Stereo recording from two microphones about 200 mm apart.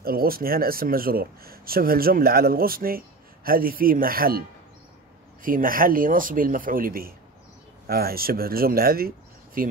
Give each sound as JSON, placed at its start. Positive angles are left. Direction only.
{"t": 0.0, "sound": "speech", "side_deg": -50}